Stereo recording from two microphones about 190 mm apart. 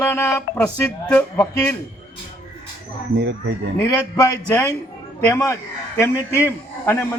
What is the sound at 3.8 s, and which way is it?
A man's voice, 15° left (ahead or behind).